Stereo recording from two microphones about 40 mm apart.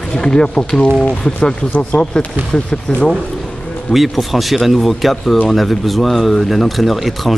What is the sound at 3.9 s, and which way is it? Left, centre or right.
Speech, centre.